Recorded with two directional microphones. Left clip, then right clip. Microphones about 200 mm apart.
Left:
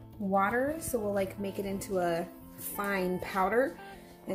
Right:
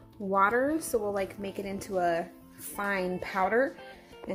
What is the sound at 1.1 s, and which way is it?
A woman's voice, 15° right (ahead or behind).